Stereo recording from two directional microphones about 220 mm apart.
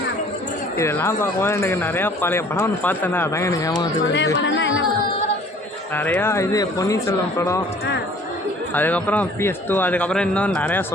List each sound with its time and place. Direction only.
0.8 s speech: 10° left (ahead or behind)
4.4 s speech: 55° left (ahead or behind)
6.0 s speech: 10° left (ahead or behind)
8.7 s speech: 10° left (ahead or behind)